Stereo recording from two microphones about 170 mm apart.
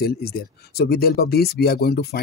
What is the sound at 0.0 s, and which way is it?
Speech, 65° left (ahead or behind).